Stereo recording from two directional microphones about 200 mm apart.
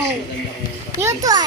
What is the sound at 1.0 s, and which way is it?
Speech, 20° right (ahead or behind).